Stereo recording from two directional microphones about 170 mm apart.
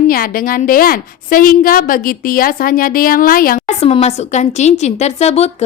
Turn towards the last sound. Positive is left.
turn(degrees=40)  # may be behind; listen again after turning